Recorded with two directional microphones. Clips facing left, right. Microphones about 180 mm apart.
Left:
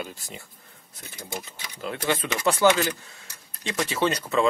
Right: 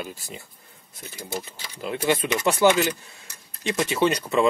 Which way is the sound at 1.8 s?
15° right (ahead or behind).